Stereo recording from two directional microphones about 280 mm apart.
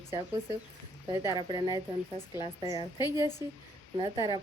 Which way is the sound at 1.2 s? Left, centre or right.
Centre.